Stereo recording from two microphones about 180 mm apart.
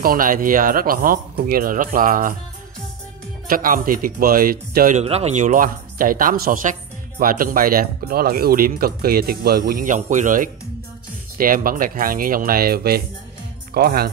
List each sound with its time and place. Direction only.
0.0 s speech: 50° right (ahead or behind)
3.4 s speech: 50° right (ahead or behind)
5.0 s speech: 35° right (ahead or behind); by 14.1 s 60° right (ahead or behind)